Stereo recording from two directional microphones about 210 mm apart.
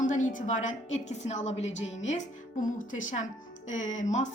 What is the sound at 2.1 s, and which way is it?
A woman's voice, 35° left (ahead or behind).